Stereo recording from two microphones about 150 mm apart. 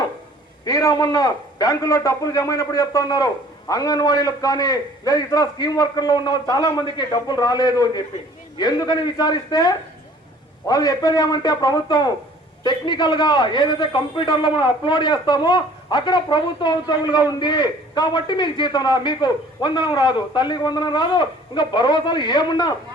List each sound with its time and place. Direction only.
0.6 s a man's voice: 25° left (ahead or behind)